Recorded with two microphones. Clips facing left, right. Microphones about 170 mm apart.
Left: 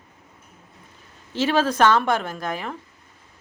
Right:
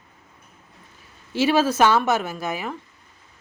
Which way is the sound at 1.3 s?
10° right (ahead or behind).